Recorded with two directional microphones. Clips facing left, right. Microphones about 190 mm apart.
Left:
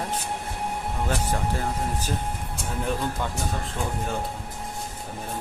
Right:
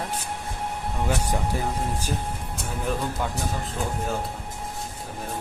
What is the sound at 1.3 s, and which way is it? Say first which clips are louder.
Speech: even; 15° right (ahead or behind).